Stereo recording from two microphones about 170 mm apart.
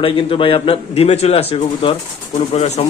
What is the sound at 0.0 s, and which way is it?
A man's voice, 30° left (ahead or behind).